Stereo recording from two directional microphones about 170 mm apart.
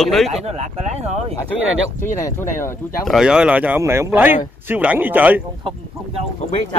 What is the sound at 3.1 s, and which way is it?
Speech, 5° right (ahead or behind).